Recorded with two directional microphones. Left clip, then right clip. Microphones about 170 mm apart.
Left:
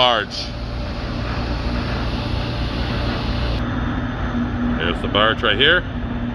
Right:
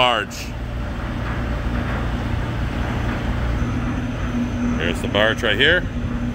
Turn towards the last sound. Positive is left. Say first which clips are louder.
# left 1 dB
turn(degrees=-40)  # may be behind; listen again after turning